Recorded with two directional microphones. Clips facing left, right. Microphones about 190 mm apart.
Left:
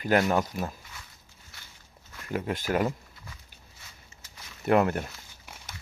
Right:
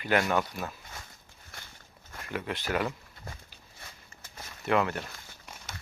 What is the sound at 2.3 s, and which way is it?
Speech, 40° left (ahead or behind).